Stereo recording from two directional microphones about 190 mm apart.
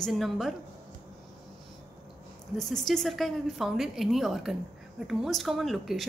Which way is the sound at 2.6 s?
Centre (ahead or behind).